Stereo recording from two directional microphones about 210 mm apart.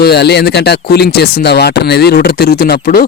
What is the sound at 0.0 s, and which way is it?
Speech, 50° left (ahead or behind).